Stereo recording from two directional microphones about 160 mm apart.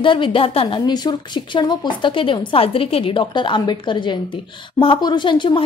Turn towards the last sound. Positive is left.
turn(degrees=30)  # may be behind; listen again after turning